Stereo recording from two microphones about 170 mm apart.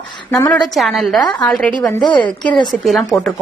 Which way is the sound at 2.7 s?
Centre (ahead or behind).